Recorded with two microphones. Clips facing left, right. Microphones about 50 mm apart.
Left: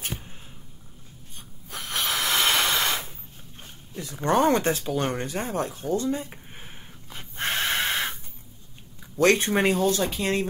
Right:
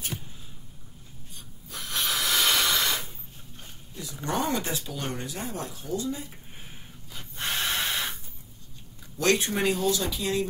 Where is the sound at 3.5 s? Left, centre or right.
Left.